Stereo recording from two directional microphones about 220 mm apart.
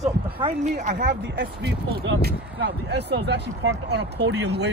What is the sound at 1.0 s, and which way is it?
Speech, 50° right (ahead or behind).